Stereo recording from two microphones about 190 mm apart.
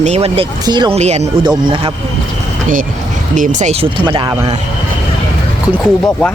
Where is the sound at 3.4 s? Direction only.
40° right (ahead or behind).